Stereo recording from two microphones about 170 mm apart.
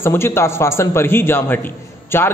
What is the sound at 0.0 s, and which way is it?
A man's voice, 15° left (ahead or behind).